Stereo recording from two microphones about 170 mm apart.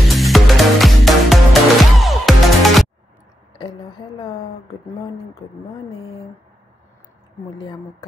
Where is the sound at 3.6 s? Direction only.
30° left (ahead or behind).